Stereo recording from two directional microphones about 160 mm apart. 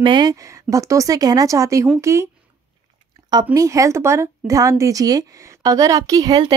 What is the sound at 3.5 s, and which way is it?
Speech, 20° right (ahead or behind).